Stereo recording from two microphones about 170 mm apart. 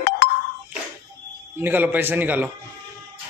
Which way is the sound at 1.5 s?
10° right (ahead or behind).